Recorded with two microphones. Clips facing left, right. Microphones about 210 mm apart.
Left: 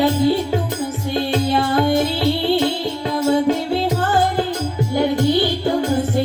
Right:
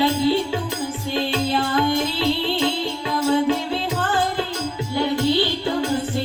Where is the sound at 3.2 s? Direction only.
45° left (ahead or behind).